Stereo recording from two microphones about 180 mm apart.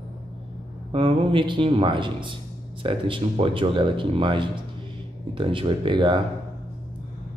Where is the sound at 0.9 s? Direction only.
30° right (ahead or behind).